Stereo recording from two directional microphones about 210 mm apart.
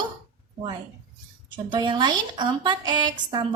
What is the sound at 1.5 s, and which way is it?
A woman's voice, 20° right (ahead or behind).